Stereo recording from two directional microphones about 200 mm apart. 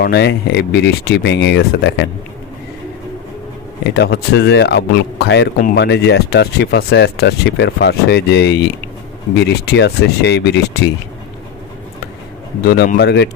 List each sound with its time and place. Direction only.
0.0 s speech: 55° left (ahead or behind)
3.9 s speech: 55° left (ahead or behind)
12.6 s speech: 50° left (ahead or behind)